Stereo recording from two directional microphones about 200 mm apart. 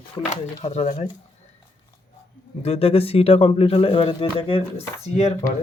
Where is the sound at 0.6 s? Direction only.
35° left (ahead or behind).